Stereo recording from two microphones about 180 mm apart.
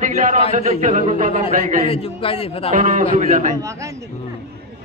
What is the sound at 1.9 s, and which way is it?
Speech, 30° left (ahead or behind).